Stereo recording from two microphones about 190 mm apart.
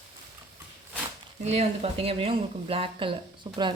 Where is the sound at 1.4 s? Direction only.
35° right (ahead or behind).